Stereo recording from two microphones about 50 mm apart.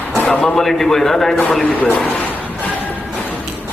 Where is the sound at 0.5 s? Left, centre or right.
Centre.